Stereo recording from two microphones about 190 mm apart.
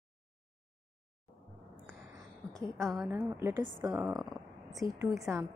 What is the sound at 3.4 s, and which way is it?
Speech, 10° right (ahead or behind).